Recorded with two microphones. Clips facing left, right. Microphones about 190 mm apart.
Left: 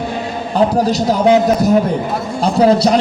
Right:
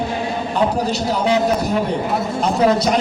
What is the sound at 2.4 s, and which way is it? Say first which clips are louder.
Speech: left 5 dB; 30° left (ahead or behind).